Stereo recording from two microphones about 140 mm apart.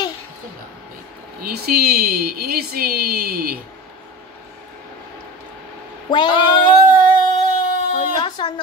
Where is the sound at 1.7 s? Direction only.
90° right.